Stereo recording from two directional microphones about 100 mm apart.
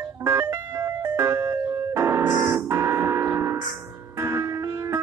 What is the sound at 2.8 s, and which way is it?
Gong, 30° right (ahead or behind).